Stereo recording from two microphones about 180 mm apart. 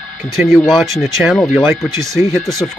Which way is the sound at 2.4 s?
Centre (ahead or behind).